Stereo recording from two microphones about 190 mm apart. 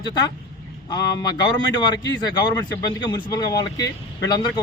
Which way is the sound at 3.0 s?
20° left (ahead or behind).